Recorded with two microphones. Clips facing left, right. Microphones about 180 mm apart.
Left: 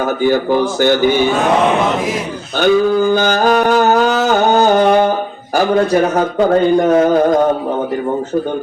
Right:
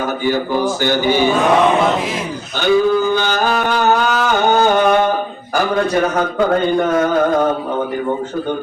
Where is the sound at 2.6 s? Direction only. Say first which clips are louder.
Left 2 dB; 45° left (ahead or behind).